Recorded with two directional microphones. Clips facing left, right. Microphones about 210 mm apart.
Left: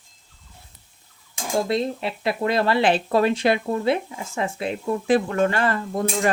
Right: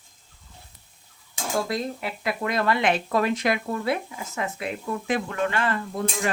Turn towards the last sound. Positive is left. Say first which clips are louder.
# left 5 dB
turn(degrees=40)  # may be behind; listen again after turning